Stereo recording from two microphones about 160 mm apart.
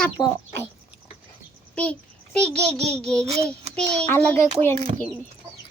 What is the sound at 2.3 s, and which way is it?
Speech, 5° left (ahead or behind).